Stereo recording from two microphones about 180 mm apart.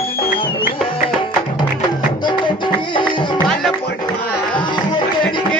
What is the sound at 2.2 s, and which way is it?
Music, 25° left (ahead or behind).